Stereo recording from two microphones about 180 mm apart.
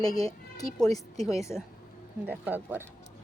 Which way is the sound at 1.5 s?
5° left (ahead or behind).